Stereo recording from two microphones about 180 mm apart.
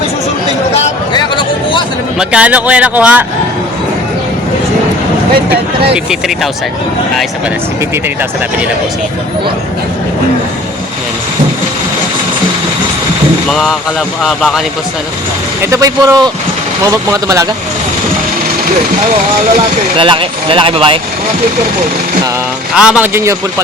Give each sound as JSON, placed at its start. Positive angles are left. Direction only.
{"t": 1.1, "sound": "a sound", "side_deg": 25}
{"t": 2.1, "sound": "a man's voice", "side_deg": -5}
{"t": 5.9, "sound": "speech", "side_deg": -5}
{"t": 13.5, "sound": "speech", "side_deg": 0}
{"t": 15.6, "sound": "a man's voice", "side_deg": -15}
{"t": 20.0, "sound": "speech", "side_deg": -30}
{"t": 22.7, "sound": "a man's voice", "side_deg": -5}